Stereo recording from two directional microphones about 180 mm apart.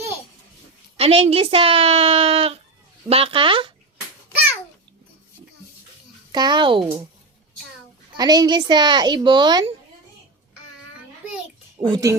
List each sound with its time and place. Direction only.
0.9 s speech: 35° right (ahead or behind)
6.3 s speech: 25° right (ahead or behind)
8.1 s speech: 20° right (ahead or behind)
11.8 s speech: 20° right (ahead or behind)